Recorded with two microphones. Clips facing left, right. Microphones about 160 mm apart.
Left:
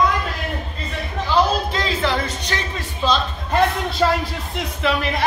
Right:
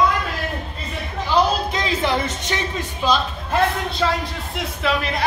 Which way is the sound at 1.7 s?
20° right (ahead or behind).